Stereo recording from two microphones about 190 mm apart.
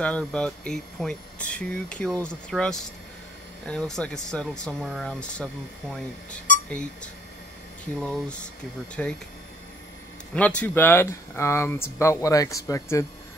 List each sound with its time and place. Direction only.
0.0 s speech: 5° left (ahead or behind)
6.7 s speech: 5° left (ahead or behind)
10.3 s speech: 5° left (ahead or behind)